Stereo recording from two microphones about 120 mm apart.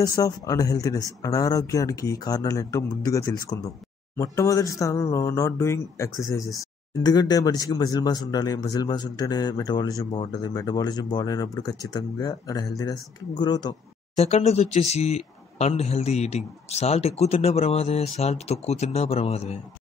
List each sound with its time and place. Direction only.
0.0 s a man's voice: 30° left (ahead or behind)
14.1 s speech: 65° left (ahead or behind)